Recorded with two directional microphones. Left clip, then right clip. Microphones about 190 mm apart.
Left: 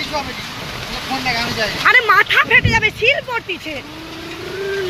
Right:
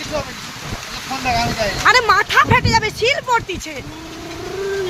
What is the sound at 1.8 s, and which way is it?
Speech, 10° right (ahead or behind).